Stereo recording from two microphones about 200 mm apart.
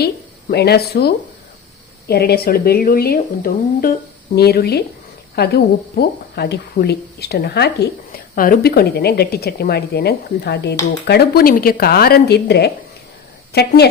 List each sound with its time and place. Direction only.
0.5 s a woman's voice: 55° left (ahead or behind)